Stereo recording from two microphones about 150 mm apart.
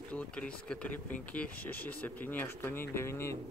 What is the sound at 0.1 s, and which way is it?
Speech, 10° left (ahead or behind).